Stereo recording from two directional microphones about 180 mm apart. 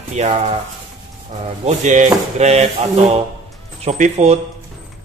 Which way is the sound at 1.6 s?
45° right (ahead or behind).